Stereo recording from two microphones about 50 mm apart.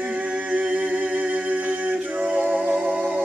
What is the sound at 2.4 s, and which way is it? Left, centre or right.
Music, right.